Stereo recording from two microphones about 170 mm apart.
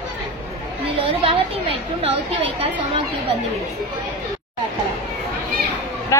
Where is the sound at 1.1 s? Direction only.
35° right (ahead or behind).